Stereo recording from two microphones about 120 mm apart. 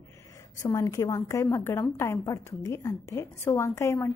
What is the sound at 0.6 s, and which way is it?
A woman's voice, 25° left (ahead or behind).